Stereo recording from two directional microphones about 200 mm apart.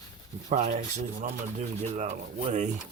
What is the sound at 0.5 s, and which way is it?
Speech, 35° right (ahead or behind).